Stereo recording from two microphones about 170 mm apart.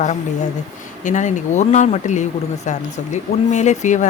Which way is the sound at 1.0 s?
45° left (ahead or behind).